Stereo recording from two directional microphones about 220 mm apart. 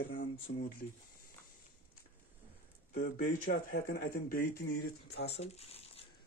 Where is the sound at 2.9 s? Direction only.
40° left (ahead or behind).